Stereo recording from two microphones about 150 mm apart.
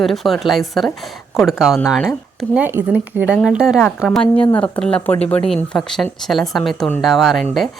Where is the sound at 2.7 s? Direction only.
15° right (ahead or behind).